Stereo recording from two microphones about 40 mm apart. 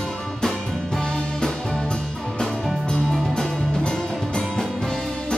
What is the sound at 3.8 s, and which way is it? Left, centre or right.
Music, left.